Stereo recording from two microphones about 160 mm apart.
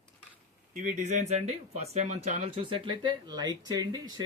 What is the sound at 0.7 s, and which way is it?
Speech, 55° right (ahead or behind).